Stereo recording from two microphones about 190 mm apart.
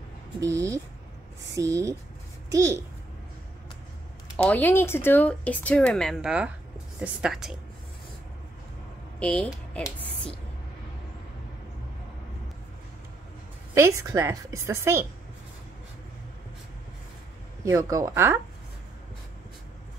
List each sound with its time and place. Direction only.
0.4 s a woman's voice: 15° right (ahead or behind)
4.4 s a woman's voice: 10° left (ahead or behind)
9.2 s a woman's voice: 5° left (ahead or behind)
13.7 s a woman's voice: 15° right (ahead or behind)
17.6 s a woman's voice: 15° right (ahead or behind)